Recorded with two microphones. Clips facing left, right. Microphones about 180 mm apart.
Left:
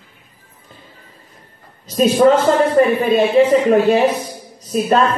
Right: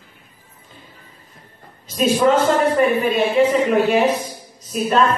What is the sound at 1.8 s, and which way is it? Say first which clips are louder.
A man's voice: left 4 dB; 40° left (ahead or behind).